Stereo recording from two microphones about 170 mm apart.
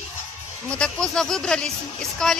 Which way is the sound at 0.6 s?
5° left (ahead or behind).